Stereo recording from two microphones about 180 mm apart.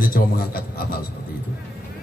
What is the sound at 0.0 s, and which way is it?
Speech, 55° left (ahead or behind).